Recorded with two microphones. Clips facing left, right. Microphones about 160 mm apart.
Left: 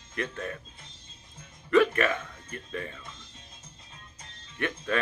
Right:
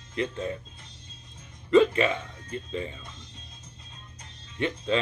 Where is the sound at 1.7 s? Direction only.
20° right (ahead or behind).